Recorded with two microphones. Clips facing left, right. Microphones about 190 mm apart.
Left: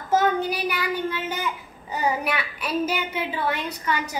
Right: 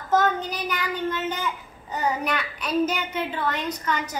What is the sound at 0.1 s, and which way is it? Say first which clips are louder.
A child's voice: left 1 dB; 10° left (ahead or behind).